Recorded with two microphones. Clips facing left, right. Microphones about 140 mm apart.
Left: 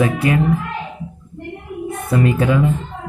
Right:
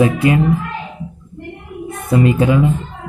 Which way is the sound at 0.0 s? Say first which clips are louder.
Right 3 dB; 20° right (ahead or behind).